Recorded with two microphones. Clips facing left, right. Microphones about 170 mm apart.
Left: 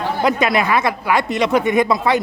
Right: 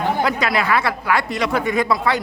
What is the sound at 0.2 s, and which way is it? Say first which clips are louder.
Speech: left 3 dB; 20° left (ahead or behind).